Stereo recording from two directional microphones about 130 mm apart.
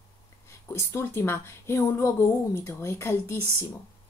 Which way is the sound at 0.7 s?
20° left (ahead or behind).